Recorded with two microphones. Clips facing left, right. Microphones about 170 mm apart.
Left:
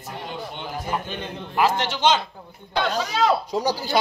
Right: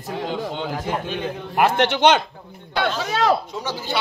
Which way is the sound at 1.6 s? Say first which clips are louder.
Right 4 dB; 60° right (ahead or behind).